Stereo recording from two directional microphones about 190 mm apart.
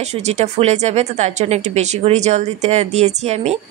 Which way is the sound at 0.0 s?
35° right (ahead or behind).